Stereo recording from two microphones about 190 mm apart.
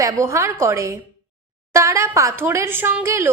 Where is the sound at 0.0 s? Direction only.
15° right (ahead or behind).